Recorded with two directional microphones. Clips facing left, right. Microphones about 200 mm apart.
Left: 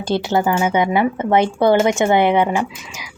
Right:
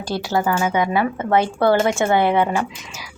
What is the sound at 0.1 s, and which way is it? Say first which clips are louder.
Speech: left 3 dB; 25° left (ahead or behind).